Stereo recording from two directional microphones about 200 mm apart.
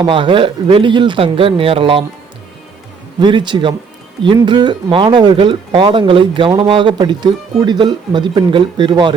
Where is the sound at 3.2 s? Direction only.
25° right (ahead or behind).